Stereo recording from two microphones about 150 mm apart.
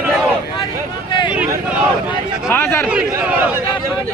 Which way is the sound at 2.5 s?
15° left (ahead or behind).